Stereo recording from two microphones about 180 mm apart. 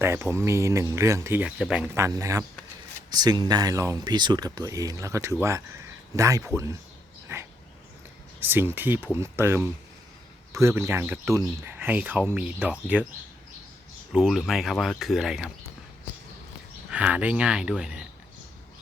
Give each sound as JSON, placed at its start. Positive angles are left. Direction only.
{"t": 0.0, "sound": "speech", "side_deg": -15}
{"t": 2.0, "sound": "speech", "side_deg": -15}
{"t": 8.4, "sound": "speech", "side_deg": -10}
{"t": 14.1, "sound": "speech", "side_deg": -5}
{"t": 16.9, "sound": "speech", "side_deg": -10}